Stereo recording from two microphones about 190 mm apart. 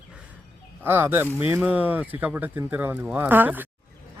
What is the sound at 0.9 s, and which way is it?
Speech, 10° right (ahead or behind).